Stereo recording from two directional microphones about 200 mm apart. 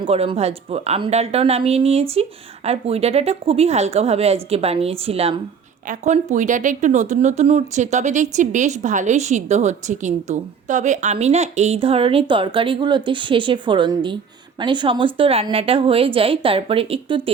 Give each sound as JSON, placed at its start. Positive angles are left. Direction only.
{"t": 0.0, "sound": "a woman's voice", "side_deg": -30}